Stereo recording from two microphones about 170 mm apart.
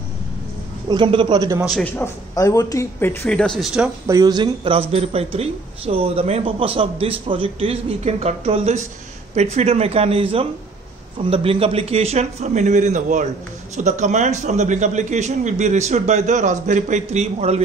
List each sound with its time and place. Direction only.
0.8 s a man's voice: 30° right (ahead or behind)
1.6 s a man's voice: 5° left (ahead or behind)
4.1 s a man's voice: 25° right (ahead or behind); by 17.6 s 40° right (ahead or behind)